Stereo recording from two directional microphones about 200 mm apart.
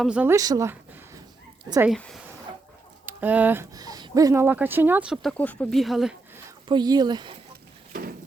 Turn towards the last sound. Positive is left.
turn(degrees=-20)  # may be behind; listen again after turning